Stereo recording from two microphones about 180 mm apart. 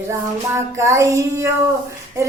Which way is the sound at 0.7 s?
15° right (ahead or behind).